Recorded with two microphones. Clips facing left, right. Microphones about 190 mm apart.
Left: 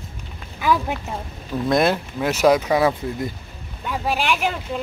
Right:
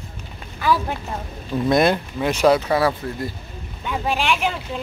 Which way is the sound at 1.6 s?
Centre (ahead or behind).